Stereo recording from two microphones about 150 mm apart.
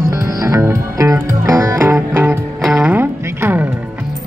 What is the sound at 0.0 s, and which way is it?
Music, 20° right (ahead or behind).